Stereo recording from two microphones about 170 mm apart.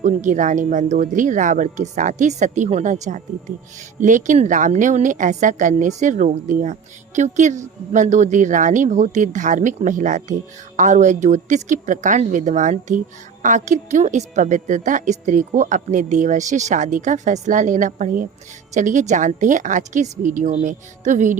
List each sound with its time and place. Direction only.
0.0 s speech: 45° right (ahead or behind)